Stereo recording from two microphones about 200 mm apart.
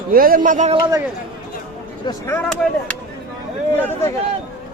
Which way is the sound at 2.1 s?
10° left (ahead or behind).